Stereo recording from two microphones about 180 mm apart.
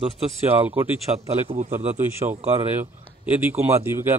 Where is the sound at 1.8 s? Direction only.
40° right (ahead or behind).